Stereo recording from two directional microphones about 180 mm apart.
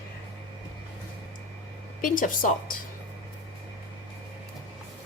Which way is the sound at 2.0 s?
50° left (ahead or behind).